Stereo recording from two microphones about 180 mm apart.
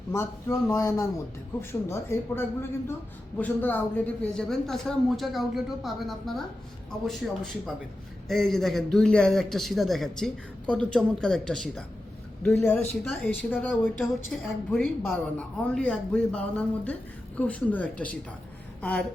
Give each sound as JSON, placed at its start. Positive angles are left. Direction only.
{"t": 0.1, "sound": "a woman's voice", "side_deg": 15}
{"t": 8.3, "sound": "a man's voice", "side_deg": 0}
{"t": 18.8, "sound": "a sound", "side_deg": 5}